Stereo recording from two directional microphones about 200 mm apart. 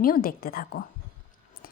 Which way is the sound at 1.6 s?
45° left (ahead or behind).